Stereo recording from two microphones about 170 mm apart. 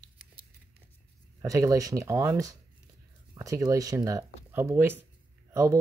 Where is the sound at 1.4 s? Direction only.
20° right (ahead or behind).